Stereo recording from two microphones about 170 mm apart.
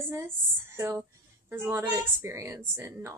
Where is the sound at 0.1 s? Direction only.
15° right (ahead or behind).